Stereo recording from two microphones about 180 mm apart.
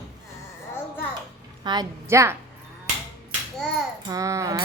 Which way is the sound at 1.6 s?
20° right (ahead or behind).